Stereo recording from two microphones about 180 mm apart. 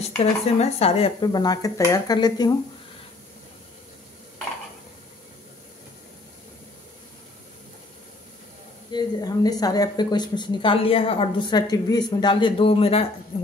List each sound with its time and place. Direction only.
0.0 s speech: 35° left (ahead or behind)
1.2 s a woman's voice: 20° left (ahead or behind)
8.9 s a woman's voice: 20° left (ahead or behind)